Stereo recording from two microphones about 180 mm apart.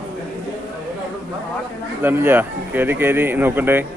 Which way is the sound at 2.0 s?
10° right (ahead or behind).